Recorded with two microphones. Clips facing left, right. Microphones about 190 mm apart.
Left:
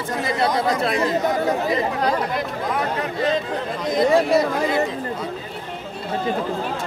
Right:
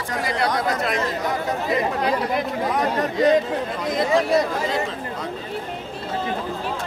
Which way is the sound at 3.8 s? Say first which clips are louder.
Left 3 dB; centre (ahead or behind).